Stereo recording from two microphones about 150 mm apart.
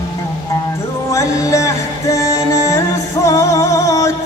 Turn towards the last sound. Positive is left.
turn(degrees=20)  # may be behind; listen again after turning